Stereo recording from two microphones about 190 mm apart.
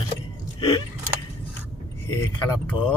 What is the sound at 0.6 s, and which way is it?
Speech, 30° left (ahead or behind).